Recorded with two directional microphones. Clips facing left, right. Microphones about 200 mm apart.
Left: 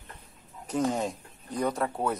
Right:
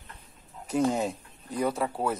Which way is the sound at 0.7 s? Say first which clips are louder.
Right 2 dB; 10° right (ahead or behind).